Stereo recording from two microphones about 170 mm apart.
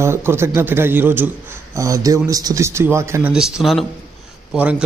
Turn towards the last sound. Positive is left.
turn(degrees=-10)  # may be behind; listen again after turning